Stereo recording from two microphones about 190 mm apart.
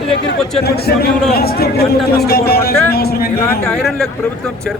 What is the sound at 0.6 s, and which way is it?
Speech, 55° left (ahead or behind).